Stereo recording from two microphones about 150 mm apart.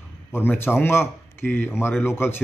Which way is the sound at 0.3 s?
15° left (ahead or behind).